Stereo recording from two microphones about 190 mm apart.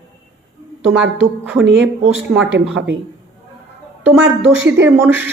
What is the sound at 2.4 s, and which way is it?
Speech, 80° right.